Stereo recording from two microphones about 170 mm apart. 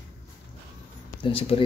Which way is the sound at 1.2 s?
30° left (ahead or behind).